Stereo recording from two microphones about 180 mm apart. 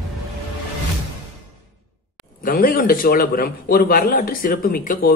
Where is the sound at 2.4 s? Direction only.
50° left (ahead or behind).